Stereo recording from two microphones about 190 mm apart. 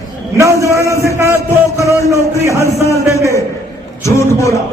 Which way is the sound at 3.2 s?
15° left (ahead or behind).